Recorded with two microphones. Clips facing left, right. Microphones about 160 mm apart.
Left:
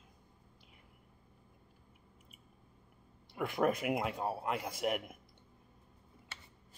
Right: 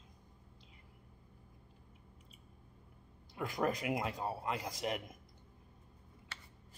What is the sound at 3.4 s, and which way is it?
Speech, 65° left (ahead or behind).